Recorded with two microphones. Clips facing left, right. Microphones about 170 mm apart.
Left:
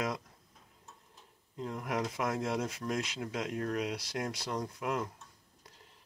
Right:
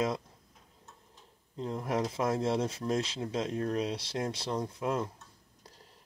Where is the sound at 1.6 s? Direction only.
25° right (ahead or behind).